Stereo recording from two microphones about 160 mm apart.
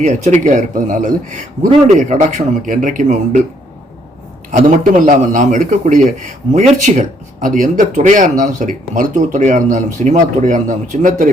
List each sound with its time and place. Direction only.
0.0 s speech: 45° right (ahead or behind)
4.5 s speech: 55° right (ahead or behind)